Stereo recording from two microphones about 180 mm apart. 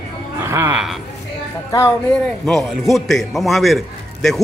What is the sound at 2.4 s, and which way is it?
A man's voice, centre (ahead or behind).